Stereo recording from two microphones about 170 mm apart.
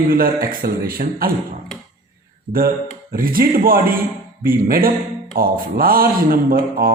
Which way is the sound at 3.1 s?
55° right (ahead or behind).